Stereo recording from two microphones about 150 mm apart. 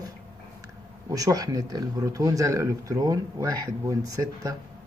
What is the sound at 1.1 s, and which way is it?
Speech, 25° right (ahead or behind).